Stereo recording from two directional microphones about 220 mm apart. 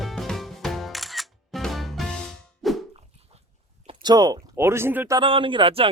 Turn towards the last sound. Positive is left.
turn(degrees=-25)  # may be behind; listen again after turning